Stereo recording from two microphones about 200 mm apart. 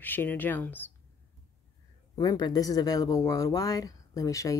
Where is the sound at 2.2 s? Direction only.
20° left (ahead or behind).